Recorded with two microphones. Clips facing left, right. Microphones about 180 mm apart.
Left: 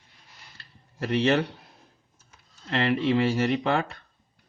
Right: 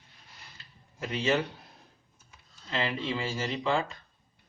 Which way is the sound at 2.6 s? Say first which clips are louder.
Left 8 dB; 65° left (ahead or behind).